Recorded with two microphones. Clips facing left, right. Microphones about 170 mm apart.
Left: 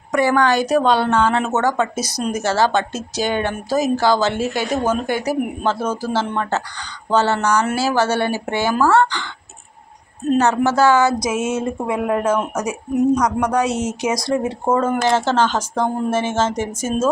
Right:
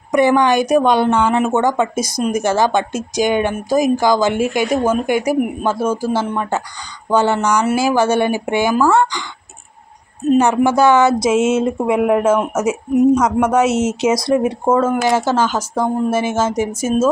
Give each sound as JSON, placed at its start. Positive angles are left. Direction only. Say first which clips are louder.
{"t": 0.1, "sound": "a woman's voice", "louder": "right 3 dB", "side_deg": -20}
{"t": 14.7, "sound": "a woman's voice", "louder": "right 2 dB", "side_deg": -5}